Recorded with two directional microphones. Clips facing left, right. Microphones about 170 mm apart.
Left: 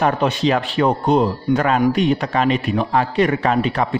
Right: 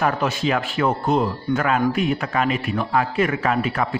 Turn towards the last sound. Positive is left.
turn(degrees=30)  # may be behind; listen again after turning